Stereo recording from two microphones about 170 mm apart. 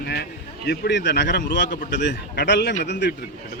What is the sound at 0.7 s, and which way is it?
A man's voice, 90° left.